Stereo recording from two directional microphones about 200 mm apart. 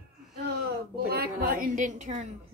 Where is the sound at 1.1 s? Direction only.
50° right (ahead or behind).